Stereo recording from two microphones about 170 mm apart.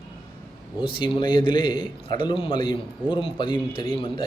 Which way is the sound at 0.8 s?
30° left (ahead or behind).